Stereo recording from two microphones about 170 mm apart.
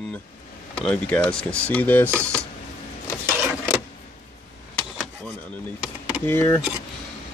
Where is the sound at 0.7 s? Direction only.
5° left (ahead or behind).